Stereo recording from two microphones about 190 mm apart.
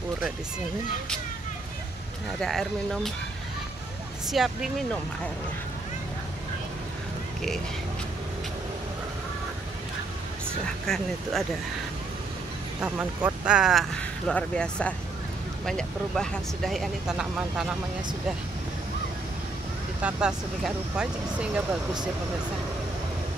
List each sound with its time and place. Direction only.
2.4 s speech: centre (ahead or behind)
4.3 s speech: centre (ahead or behind)
10.9 s speech: centre (ahead or behind)
12.8 s speech: 5° right (ahead or behind)
20.0 s speech: 5° right (ahead or behind)